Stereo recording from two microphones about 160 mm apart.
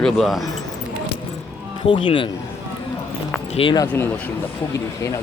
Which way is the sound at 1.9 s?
30° left (ahead or behind).